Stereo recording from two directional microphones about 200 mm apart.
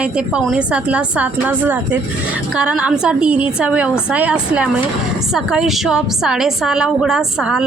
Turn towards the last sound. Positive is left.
turn(degrees=-5)  # may be behind; listen again after turning